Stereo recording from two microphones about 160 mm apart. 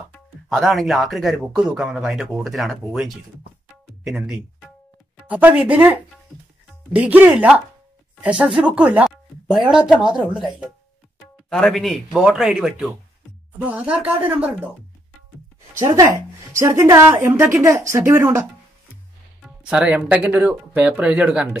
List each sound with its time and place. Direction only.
0.5 s speech: centre (ahead or behind)
16.5 s speech: 15° right (ahead or behind)
19.7 s speech: 10° right (ahead or behind)